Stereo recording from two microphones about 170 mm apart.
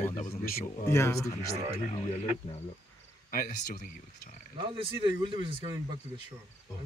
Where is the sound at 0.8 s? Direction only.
15° left (ahead or behind).